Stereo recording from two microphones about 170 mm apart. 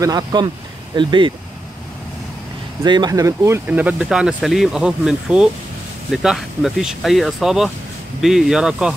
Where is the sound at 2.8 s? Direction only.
25° right (ahead or behind); by 8.9 s 5° right (ahead or behind).